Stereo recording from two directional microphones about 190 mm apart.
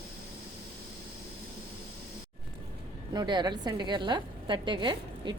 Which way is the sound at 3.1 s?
20° right (ahead or behind).